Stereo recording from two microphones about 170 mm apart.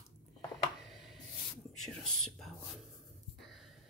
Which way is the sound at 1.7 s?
5° left (ahead or behind).